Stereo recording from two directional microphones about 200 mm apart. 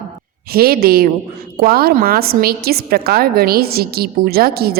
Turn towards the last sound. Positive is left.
turn(degrees=-50)  # may be behind; listen again after turning